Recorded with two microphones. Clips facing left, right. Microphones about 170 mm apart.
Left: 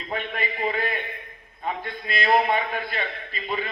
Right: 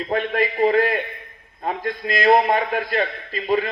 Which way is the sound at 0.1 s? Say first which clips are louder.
Right 7 dB; 40° right (ahead or behind).